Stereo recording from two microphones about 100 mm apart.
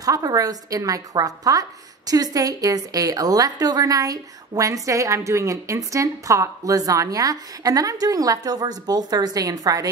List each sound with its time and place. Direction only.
0.0 s a woman's voice: 35° right (ahead or behind)